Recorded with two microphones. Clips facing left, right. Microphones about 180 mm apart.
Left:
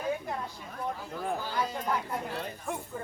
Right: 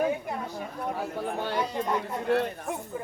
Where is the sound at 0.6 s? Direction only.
65° right (ahead or behind).